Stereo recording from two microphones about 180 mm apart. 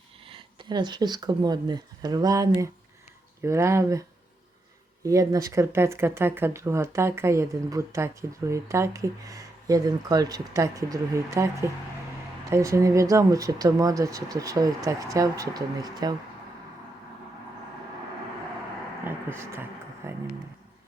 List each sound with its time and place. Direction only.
0.3 s speech: 25° right (ahead or behind)
5.0 s speech: 20° right (ahead or behind)
19.0 s a sound: 10° right (ahead or behind)
20.0 s speech: 15° right (ahead or behind)